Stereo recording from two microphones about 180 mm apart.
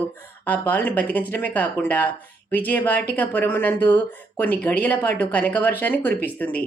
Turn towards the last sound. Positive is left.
turn(degrees=10)  # may be behind; listen again after turning